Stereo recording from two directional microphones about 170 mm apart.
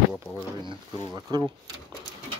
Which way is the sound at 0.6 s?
25° right (ahead or behind).